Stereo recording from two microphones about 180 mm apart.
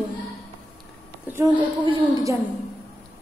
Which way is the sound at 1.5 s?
25° right (ahead or behind).